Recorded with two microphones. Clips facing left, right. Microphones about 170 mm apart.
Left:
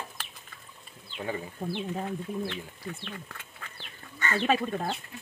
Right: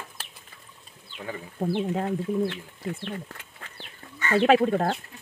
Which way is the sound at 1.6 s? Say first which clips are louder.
Right 8 dB; 65° right (ahead or behind).